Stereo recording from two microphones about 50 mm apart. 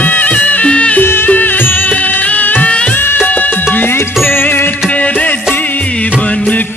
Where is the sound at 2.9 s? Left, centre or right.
Left.